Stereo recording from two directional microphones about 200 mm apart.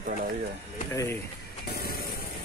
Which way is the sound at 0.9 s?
15° left (ahead or behind).